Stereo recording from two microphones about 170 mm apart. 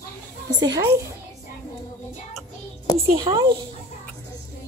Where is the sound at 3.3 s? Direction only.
30° right (ahead or behind).